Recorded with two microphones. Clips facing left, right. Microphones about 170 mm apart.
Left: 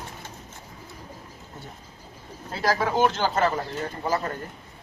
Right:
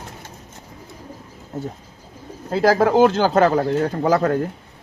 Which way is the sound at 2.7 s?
50° right (ahead or behind).